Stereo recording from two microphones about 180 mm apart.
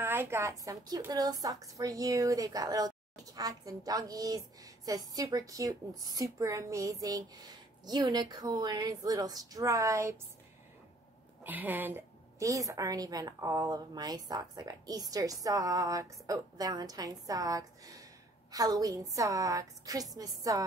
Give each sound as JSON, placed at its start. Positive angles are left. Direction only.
{"t": 0.0, "sound": "a woman's voice", "side_deg": -15}
{"t": 11.4, "sound": "a woman's voice", "side_deg": -10}